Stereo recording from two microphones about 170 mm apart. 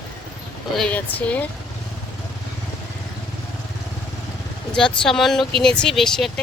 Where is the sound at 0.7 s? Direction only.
10° left (ahead or behind).